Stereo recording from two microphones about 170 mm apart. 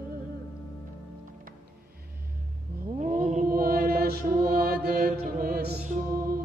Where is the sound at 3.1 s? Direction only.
50° right (ahead or behind).